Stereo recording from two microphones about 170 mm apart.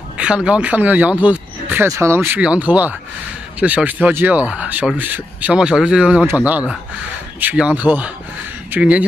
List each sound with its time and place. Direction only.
0.2 s speech: 5° right (ahead or behind)